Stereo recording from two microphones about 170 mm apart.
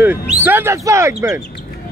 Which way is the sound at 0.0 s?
10° right (ahead or behind).